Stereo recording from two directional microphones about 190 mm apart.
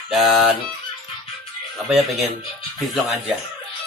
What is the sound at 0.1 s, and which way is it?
Speech, centre (ahead or behind).